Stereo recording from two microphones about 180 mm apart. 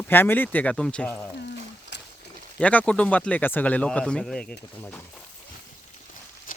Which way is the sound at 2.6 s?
5° left (ahead or behind).